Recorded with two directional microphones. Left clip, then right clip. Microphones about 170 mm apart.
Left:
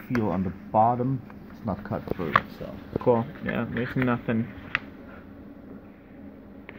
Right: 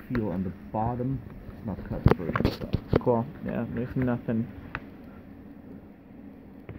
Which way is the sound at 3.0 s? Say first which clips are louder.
Left 3 dB; 5° right (ahead or behind).